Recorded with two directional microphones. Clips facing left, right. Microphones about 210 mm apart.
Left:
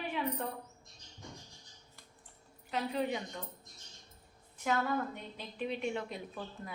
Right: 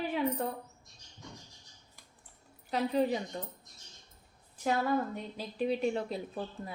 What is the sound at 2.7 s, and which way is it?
Speech, 35° right (ahead or behind).